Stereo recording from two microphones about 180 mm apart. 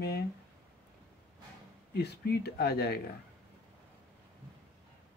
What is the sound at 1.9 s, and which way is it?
Speech, 65° left (ahead or behind).